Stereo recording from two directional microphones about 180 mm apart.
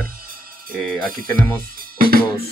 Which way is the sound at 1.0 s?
50° right (ahead or behind).